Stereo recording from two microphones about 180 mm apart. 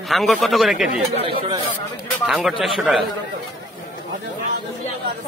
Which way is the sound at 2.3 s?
Centre (ahead or behind).